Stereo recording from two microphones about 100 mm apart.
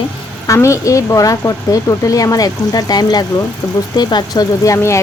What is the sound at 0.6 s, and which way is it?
Speech, 30° left (ahead or behind).